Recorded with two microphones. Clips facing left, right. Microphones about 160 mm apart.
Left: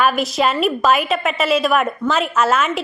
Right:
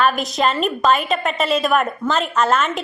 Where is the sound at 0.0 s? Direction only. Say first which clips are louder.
Left 1 dB; 5° left (ahead or behind).